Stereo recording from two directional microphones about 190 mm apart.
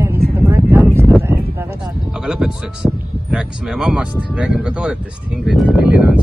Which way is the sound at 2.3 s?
5° right (ahead or behind).